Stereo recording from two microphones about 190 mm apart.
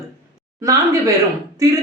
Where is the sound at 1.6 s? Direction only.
15° right (ahead or behind).